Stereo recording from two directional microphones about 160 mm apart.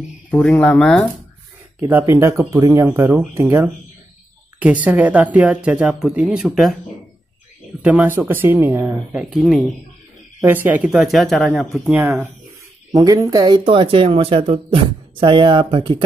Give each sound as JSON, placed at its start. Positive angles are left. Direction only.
{"t": 0.3, "sound": "speech", "side_deg": 5}
{"t": 1.8, "sound": "speech", "side_deg": -15}
{"t": 7.8, "sound": "speech", "side_deg": -10}
{"t": 10.4, "sound": "speech", "side_deg": -10}
{"t": 12.9, "sound": "speech", "side_deg": -20}